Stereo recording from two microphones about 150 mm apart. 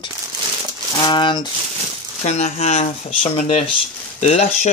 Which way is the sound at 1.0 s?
30° left (ahead or behind).